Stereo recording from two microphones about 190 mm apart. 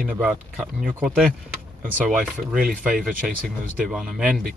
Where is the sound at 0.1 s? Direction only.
5° right (ahead or behind).